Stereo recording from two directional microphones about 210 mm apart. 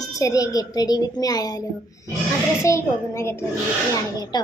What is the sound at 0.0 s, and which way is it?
A child's voice, 15° left (ahead or behind).